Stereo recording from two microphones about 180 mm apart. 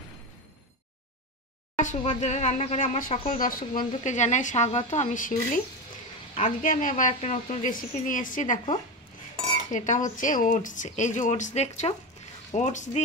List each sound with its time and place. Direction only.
1.8 s a woman's voice: 45° left (ahead or behind)
9.7 s a woman's voice: 45° left (ahead or behind)